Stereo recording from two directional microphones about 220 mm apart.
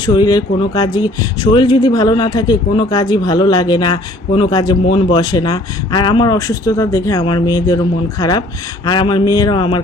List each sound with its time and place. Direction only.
0.0 s speech: 20° left (ahead or behind)